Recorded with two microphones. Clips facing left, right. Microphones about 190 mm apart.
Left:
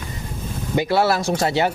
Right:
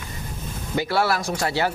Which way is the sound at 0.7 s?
20° left (ahead or behind).